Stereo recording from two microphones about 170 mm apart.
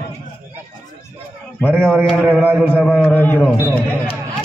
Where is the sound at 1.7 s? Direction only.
10° right (ahead or behind).